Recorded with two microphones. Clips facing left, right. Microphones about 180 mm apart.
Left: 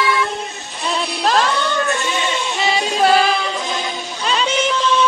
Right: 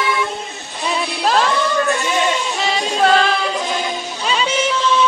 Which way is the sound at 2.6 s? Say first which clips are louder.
Left 1 dB; 5° left (ahead or behind).